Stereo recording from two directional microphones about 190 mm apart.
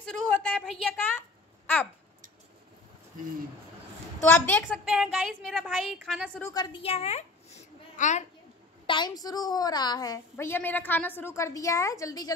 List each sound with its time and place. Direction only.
0.0 s a sound: 5° left (ahead or behind)
4.5 s a woman's voice: centre (ahead or behind)
6.4 s a woman's voice: 20° left (ahead or behind); by 8.2 s 35° left (ahead or behind)
8.8 s a woman's voice: 25° left (ahead or behind)